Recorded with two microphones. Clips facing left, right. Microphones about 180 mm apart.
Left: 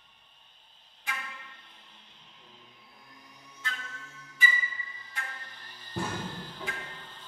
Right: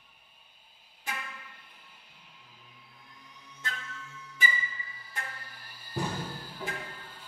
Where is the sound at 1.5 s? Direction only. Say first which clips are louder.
Even; 10° right (ahead or behind).